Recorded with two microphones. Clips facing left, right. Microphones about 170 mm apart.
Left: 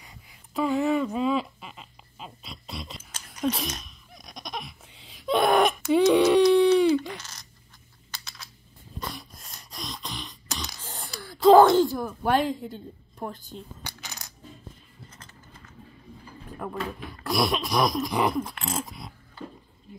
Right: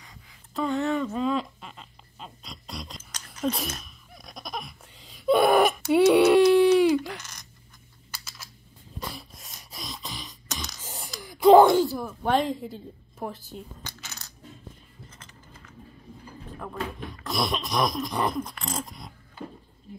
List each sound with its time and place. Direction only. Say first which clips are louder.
0.6 s a sound: left 2 dB; 5° left (ahead or behind)
8.1 s a sound: even; 5° right (ahead or behind)
9.0 s throat clearing: left 1 dB; centre (ahead or behind)
10.5 s beatboxing: left 1 dB; 10° right (ahead or behind)
11.1 s wail: even; 15° right (ahead or behind)
11.8 s a woman's voice: left 2 dB; centre (ahead or behind)
13.8 s coin: left 2 dB; 15° left (ahead or behind)
16.6 s speech: left 1 dB; 10° left (ahead or behind)